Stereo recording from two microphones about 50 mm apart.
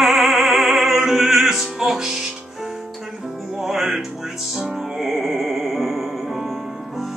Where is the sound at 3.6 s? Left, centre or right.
Centre.